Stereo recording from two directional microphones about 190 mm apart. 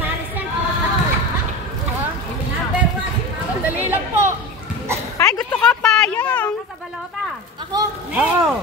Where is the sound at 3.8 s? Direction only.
10° right (ahead or behind).